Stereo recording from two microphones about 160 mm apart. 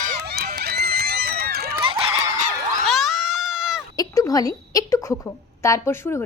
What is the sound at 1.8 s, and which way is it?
Honk, 35° right (ahead or behind).